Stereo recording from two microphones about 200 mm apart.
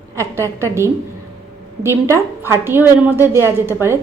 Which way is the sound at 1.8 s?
15° right (ahead or behind).